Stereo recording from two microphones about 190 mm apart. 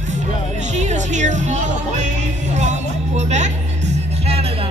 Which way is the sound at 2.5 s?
35° right (ahead or behind).